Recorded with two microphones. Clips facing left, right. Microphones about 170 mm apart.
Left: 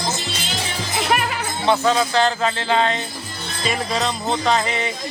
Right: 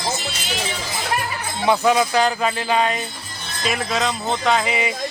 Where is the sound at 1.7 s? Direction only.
10° right (ahead or behind).